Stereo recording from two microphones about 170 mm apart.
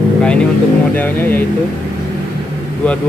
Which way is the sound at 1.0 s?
10° left (ahead or behind).